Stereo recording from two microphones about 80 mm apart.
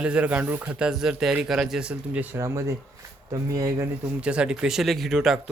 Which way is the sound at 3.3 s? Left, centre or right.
Right.